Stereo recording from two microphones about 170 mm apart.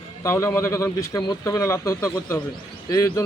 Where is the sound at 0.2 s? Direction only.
15° left (ahead or behind).